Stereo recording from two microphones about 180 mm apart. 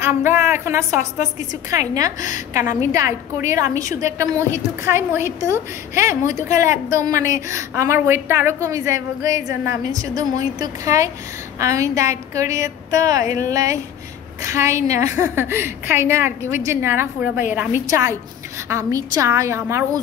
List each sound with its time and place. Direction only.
0.0 s a woman's voice: 15° right (ahead or behind)